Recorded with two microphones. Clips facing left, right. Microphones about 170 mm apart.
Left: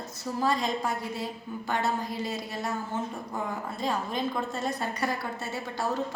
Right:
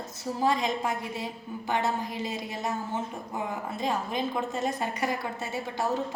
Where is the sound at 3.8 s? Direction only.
15° right (ahead or behind).